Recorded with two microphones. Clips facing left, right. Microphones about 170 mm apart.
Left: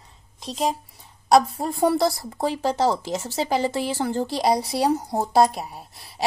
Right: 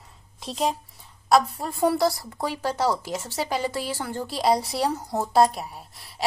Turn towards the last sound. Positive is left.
turn(degrees=20)  # may be behind; listen again after turning